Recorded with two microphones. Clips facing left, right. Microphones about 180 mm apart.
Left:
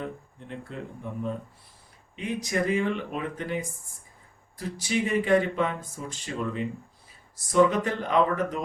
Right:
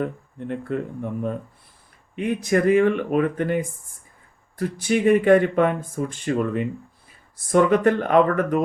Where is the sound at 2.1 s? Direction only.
55° right (ahead or behind).